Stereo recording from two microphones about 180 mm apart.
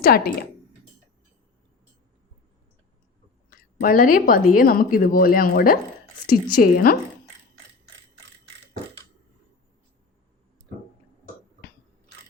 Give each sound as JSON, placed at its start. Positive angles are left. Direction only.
{"t": 0.0, "sound": "speech", "side_deg": 55}
{"t": 3.8, "sound": "a woman's voice", "side_deg": 50}